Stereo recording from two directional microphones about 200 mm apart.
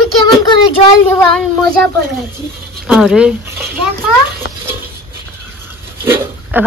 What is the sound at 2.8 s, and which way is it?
Speech, 5° right (ahead or behind).